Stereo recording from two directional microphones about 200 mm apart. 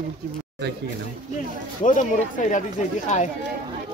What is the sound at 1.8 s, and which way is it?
Speech, 40° left (ahead or behind).